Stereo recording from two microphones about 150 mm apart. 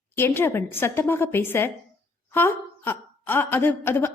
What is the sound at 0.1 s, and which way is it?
A woman's voice, 15° left (ahead or behind).